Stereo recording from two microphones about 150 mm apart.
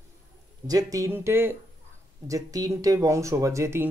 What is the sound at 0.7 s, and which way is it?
Speech, 25° right (ahead or behind).